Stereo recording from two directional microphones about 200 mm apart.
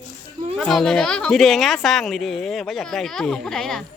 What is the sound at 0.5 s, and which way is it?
Speech, centre (ahead or behind).